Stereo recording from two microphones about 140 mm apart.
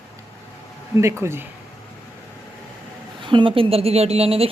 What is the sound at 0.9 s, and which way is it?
Speech, 20° right (ahead or behind).